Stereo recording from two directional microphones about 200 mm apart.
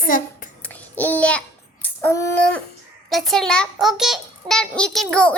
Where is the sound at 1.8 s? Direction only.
10° left (ahead or behind).